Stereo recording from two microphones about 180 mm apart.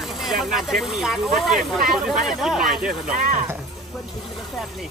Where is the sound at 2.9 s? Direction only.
50° right (ahead or behind).